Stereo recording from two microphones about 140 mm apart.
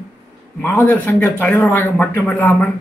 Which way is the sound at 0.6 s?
15° left (ahead or behind).